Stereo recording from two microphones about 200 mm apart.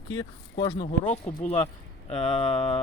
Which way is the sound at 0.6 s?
20° left (ahead or behind).